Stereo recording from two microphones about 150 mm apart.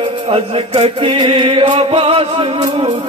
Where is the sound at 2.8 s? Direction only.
45° right (ahead or behind).